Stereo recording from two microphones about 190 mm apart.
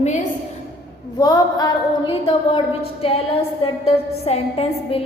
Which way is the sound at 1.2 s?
20° left (ahead or behind).